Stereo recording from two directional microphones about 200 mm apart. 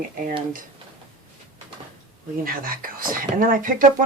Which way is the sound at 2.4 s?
45° right (ahead or behind).